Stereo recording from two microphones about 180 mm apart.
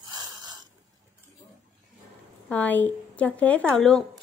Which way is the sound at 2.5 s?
10° left (ahead or behind).